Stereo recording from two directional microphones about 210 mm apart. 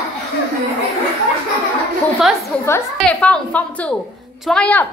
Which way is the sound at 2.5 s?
5° left (ahead or behind).